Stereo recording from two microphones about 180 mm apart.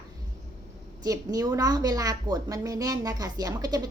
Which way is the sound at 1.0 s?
20° right (ahead or behind).